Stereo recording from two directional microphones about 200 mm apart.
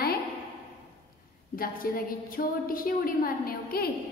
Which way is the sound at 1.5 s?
45° left (ahead or behind).